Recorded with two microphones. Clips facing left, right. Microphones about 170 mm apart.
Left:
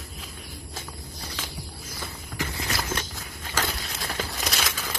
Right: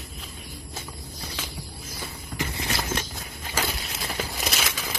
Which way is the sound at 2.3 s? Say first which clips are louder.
Right 1 dB; 25° right (ahead or behind).